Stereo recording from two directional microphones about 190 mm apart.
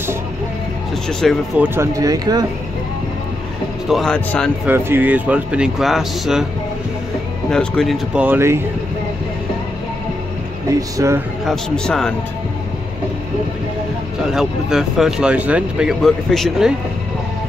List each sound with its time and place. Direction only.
1.2 s speech: centre (ahead or behind)
1.6 s speech: 15° right (ahead or behind)
3.9 s speech: 5° left (ahead or behind)
4.6 s speech: 10° right (ahead or behind)
7.5 s speech: centre (ahead or behind)
11.0 s speech: 15° right (ahead or behind)
11.4 s speech: 5° left (ahead or behind)
14.3 s speech: 5° right (ahead or behind)